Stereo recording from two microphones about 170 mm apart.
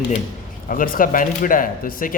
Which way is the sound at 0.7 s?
55° left (ahead or behind).